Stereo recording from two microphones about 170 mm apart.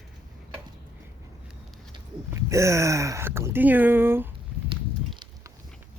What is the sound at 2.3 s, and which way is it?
Speech, 15° right (ahead or behind).